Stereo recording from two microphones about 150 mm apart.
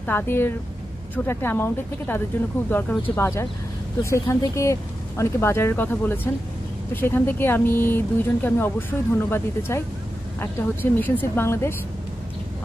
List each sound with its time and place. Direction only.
0.0 s speech: 10° left (ahead or behind)